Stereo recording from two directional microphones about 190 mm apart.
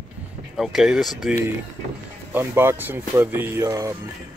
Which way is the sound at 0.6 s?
Centre (ahead or behind).